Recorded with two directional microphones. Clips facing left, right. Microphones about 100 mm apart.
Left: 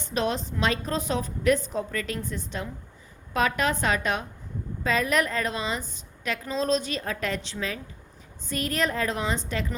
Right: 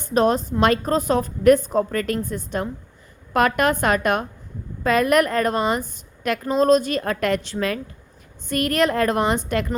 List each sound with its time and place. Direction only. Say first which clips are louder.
0.0 s a woman's voice: right 9 dB; 45° right (ahead or behind)